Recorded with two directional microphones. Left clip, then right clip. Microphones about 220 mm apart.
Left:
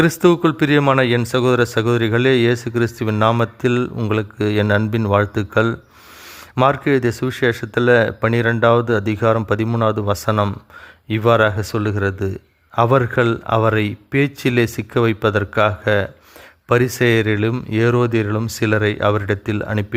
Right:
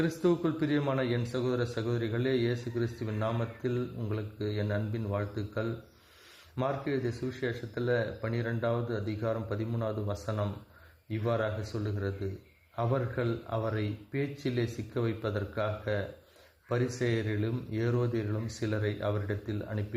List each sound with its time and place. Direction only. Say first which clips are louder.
0.0 s a man's voice: left 15 dB; 35° left (ahead or behind)